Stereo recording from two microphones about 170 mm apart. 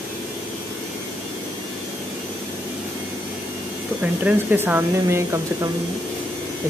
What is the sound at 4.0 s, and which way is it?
Speech, 10° right (ahead or behind).